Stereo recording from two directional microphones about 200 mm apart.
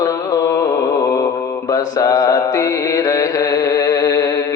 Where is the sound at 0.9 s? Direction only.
15° left (ahead or behind).